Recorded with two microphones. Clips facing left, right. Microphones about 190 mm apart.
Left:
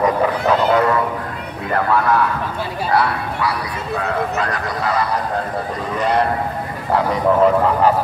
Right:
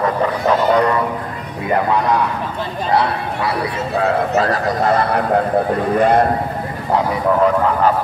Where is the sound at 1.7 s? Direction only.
15° right (ahead or behind).